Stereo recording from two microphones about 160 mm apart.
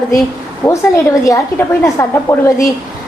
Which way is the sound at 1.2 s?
20° left (ahead or behind).